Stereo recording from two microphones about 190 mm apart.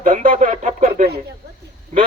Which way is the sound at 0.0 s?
45° right (ahead or behind).